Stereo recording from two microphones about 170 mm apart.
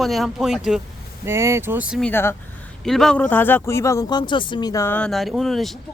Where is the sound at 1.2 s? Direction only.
15° right (ahead or behind).